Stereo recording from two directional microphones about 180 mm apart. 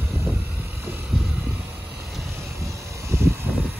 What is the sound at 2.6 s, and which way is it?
Vehicle, 15° right (ahead or behind).